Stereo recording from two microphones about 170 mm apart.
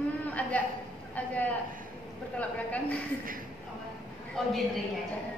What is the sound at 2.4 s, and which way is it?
Speech, 10° left (ahead or behind).